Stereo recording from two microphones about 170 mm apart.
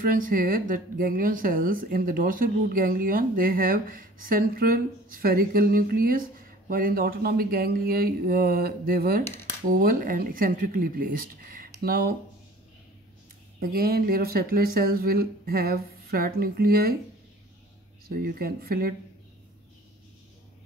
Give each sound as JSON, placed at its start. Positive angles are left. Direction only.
{"t": 0.0, "sound": "speech", "side_deg": -55}
{"t": 13.6, "sound": "speech", "side_deg": -60}
{"t": 18.1, "sound": "speech", "side_deg": -60}